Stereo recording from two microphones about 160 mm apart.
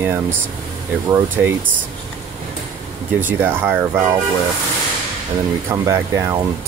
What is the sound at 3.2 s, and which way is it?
Speech, 10° right (ahead or behind).